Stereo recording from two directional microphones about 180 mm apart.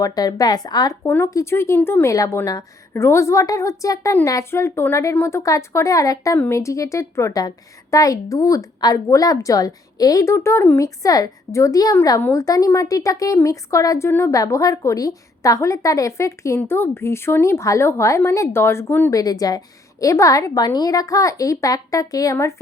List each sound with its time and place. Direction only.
0.0 s a woman's voice: 20° left (ahead or behind)